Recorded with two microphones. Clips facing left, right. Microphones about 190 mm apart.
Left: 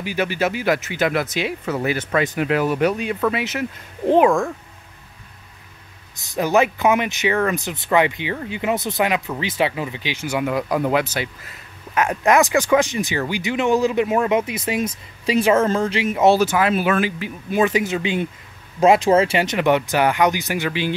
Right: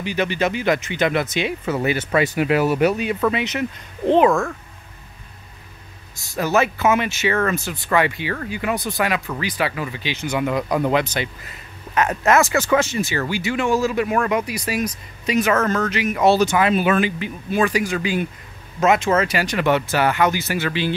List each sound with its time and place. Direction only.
0.0 s speech: 10° left (ahead or behind)
6.3 s speech: 15° left (ahead or behind)
16.3 s speech: 5° left (ahead or behind)
17.5 s speech: 20° left (ahead or behind)